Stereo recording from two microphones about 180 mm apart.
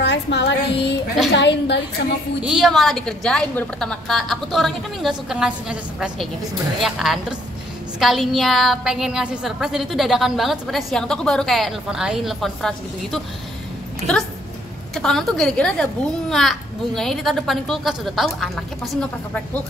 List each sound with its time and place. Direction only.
0.0 s music: 70° left (ahead or behind)
2.4 s a woman's voice: centre (ahead or behind)